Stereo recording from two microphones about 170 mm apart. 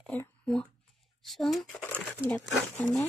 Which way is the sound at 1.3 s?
Centre (ahead or behind).